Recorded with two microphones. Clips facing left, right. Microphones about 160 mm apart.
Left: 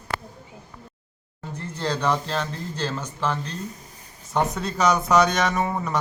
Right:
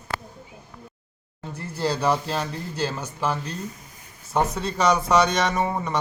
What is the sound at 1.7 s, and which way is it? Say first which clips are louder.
Speech: right 1 dB; 10° right (ahead or behind).